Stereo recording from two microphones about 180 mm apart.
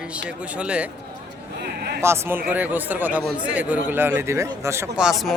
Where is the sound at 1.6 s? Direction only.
65° right (ahead or behind).